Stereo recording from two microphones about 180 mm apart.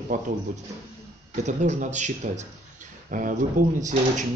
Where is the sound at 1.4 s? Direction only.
40° right (ahead or behind).